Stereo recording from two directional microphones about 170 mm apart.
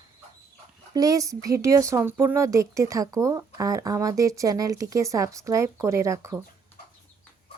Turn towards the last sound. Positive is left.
turn(degrees=-15)  # may be behind; listen again after turning